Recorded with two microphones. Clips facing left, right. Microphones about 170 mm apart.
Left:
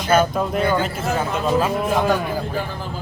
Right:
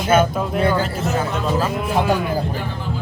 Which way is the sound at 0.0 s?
5° right (ahead or behind).